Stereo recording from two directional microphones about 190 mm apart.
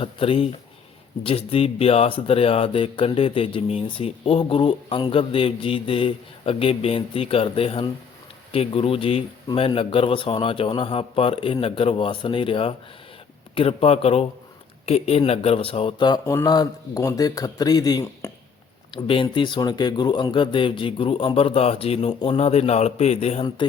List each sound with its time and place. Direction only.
0.0 s speech: 30° left (ahead or behind)